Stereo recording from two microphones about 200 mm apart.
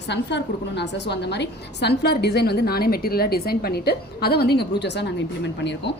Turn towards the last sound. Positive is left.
turn(degrees=60)  # may be behind; listen again after turning